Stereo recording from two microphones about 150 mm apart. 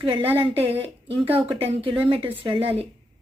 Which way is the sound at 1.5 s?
40° right (ahead or behind).